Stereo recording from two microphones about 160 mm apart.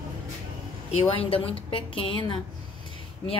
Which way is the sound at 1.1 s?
35° left (ahead or behind).